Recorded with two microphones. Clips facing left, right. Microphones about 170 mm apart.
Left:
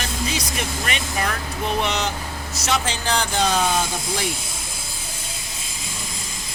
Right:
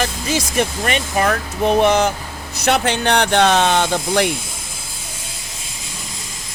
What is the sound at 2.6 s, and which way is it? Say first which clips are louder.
Speech: right 7 dB; 60° right (ahead or behind).